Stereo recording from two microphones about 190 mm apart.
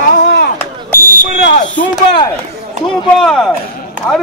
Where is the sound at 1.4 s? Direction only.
45° left (ahead or behind).